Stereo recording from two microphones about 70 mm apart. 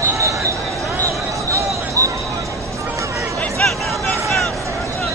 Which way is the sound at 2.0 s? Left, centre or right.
Right.